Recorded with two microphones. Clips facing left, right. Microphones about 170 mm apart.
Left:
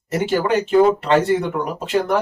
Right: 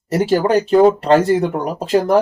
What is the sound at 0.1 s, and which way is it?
Speech, 35° right (ahead or behind).